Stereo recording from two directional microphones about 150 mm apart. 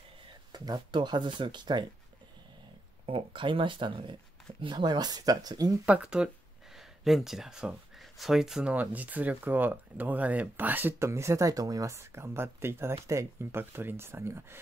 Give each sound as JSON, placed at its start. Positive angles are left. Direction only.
{"t": 0.5, "sound": "speech", "side_deg": -30}
{"t": 3.1, "sound": "speech", "side_deg": -35}
{"t": 5.9, "sound": "speech", "side_deg": -10}